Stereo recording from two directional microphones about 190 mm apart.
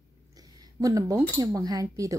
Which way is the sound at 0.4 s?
20° right (ahead or behind).